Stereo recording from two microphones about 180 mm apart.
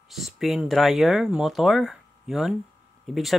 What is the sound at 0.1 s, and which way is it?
Speech, centre (ahead or behind).